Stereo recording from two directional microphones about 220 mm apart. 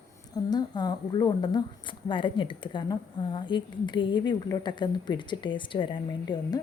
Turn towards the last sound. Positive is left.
turn(degrees=20)  # may be behind; listen again after turning